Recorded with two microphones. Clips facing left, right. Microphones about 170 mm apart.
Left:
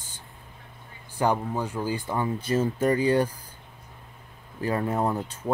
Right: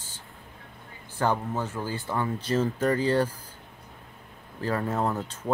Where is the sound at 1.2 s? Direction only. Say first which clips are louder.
Left 2 dB; 15° left (ahead or behind).